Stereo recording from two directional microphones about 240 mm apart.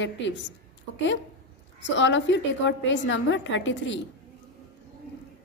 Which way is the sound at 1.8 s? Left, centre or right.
Left.